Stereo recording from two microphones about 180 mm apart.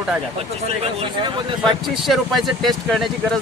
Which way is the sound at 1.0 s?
30° right (ahead or behind).